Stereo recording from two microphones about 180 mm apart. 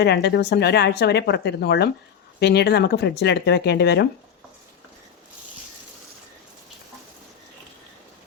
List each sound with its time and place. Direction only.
0.0 s speech: 65° left (ahead or behind)